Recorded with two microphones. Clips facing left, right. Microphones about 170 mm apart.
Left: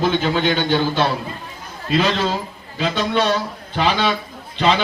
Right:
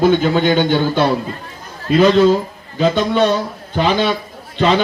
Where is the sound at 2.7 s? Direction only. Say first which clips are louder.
Right 5 dB; 45° right (ahead or behind).